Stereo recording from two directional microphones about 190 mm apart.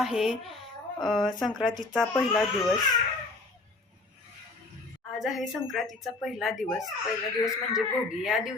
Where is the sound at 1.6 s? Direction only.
25° left (ahead or behind).